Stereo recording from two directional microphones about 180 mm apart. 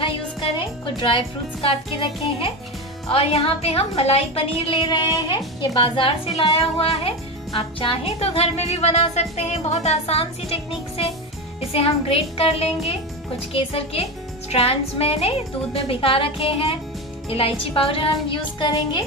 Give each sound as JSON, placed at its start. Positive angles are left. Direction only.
{"t": 0.0, "sound": "a woman's voice", "side_deg": 30}